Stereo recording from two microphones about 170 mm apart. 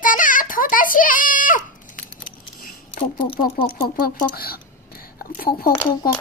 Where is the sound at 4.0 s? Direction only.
60° left (ahead or behind).